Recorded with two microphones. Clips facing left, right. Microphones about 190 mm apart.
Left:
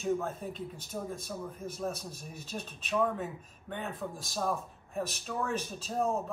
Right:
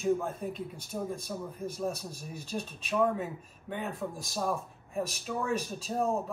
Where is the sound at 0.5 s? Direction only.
Centre (ahead or behind).